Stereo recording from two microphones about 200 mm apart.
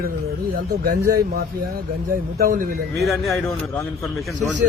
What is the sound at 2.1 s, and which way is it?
Speech, 45° right (ahead or behind).